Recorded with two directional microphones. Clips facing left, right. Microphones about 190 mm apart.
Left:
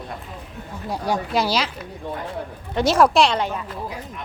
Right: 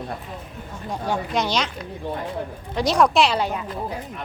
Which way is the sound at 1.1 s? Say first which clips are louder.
Left 2 dB; 5° left (ahead or behind).